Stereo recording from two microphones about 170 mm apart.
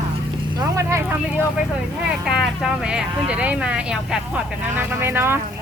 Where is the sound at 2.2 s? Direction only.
5° right (ahead or behind).